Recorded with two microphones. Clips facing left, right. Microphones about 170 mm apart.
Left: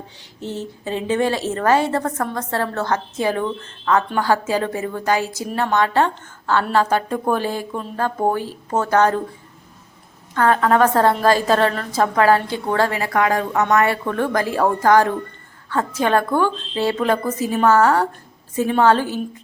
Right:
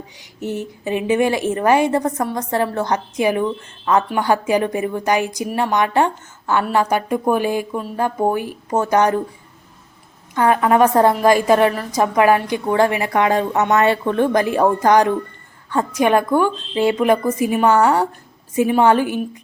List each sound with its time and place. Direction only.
0.2 s a woman's voice: 10° right (ahead or behind)
10.3 s a woman's voice: 15° right (ahead or behind)